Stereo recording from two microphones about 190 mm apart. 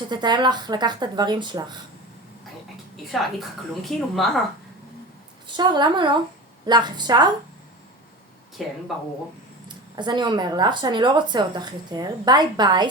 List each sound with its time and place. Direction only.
0.1 s speech: 25° right (ahead or behind)
3.1 s a woman's voice: centre (ahead or behind)
5.5 s a woman's voice: 25° right (ahead or behind)
8.6 s a woman's voice: centre (ahead or behind)
9.6 s speech: 25° right (ahead or behind)